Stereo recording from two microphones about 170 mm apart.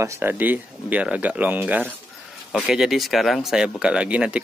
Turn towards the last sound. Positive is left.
turn(degrees=-5)  # may be behind; listen again after turning